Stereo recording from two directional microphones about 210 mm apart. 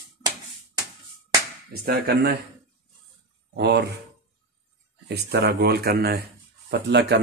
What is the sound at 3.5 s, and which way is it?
Speech, 55° right (ahead or behind).